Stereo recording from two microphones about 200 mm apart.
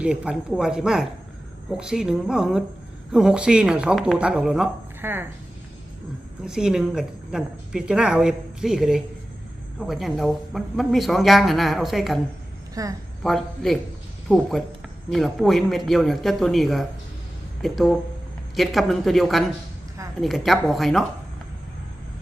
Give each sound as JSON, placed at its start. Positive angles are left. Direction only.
{"t": 0.0, "sound": "a woman's voice", "side_deg": -5}
{"t": 6.4, "sound": "a woman's voice", "side_deg": -5}
{"t": 12.8, "sound": "a woman's voice", "side_deg": -15}
{"t": 13.2, "sound": "a woman's voice", "side_deg": 0}
{"t": 15.1, "sound": "a woman's voice", "side_deg": 0}